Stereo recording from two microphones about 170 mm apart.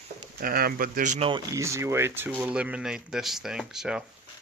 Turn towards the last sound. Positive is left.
turn(degrees=-5)  # may be behind; listen again after turning